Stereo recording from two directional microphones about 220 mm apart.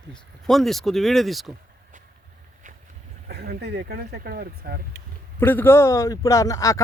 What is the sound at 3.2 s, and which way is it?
Speech, 45° right (ahead or behind).